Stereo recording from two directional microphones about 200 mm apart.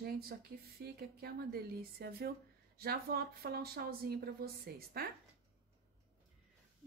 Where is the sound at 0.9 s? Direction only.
50° right (ahead or behind).